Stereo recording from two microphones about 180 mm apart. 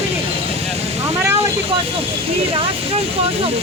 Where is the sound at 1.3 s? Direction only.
35° right (ahead or behind).